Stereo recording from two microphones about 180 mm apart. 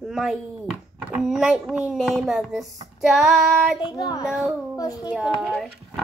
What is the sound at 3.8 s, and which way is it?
Child singing, 20° left (ahead or behind).